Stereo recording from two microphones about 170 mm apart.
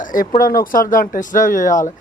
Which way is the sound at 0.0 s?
50° left (ahead or behind).